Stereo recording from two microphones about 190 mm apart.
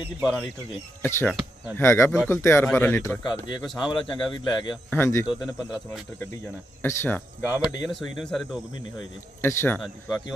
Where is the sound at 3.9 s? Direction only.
25° left (ahead or behind).